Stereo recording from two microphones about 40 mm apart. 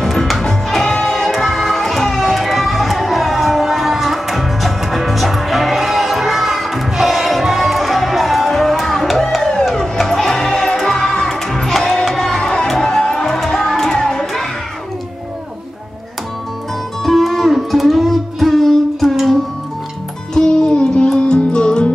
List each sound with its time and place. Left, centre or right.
0.0 s music: centre
9.4 s music: centre
17.0 s music: centre
20.3 s music: centre